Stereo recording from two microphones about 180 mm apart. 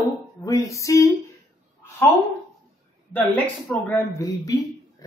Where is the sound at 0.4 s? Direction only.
20° left (ahead or behind).